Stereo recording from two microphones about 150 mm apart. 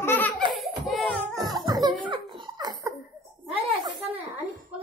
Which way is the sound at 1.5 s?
25° right (ahead or behind).